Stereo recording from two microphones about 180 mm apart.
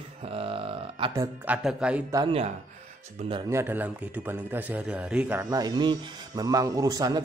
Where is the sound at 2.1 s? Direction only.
20° right (ahead or behind).